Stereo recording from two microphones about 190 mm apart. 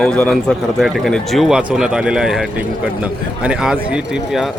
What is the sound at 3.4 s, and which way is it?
Speech, 5° right (ahead or behind).